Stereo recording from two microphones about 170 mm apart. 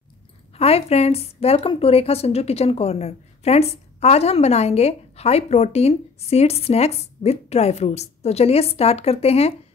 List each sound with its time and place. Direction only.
0.6 s a woman's voice: 35° left (ahead or behind)